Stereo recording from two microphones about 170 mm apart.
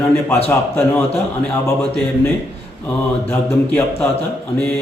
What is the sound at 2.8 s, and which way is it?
A man's voice, 10° left (ahead or behind).